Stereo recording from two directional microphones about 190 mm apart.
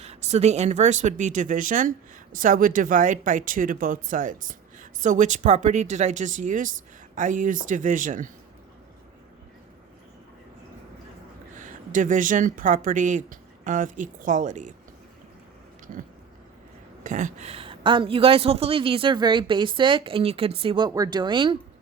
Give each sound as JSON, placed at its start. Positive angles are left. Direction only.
{"t": 0.0, "sound": "speech", "side_deg": -35}
{"t": 11.5, "sound": "speech", "side_deg": -40}
{"t": 17.0, "sound": "a woman's voice", "side_deg": -40}